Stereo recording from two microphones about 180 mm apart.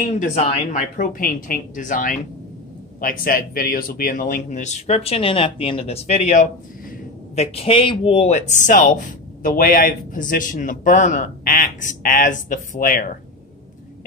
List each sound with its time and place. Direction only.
0.9 s a man's voice: 50° left (ahead or behind)